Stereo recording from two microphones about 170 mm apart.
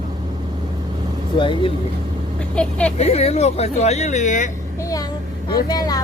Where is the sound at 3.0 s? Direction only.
40° left (ahead or behind).